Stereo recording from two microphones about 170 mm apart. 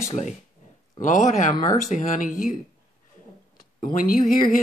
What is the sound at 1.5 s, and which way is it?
Speech, 20° left (ahead or behind).